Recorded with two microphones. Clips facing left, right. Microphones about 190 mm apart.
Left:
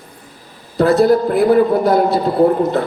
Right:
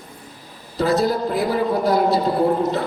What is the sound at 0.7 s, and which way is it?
A man's voice, 55° left (ahead or behind).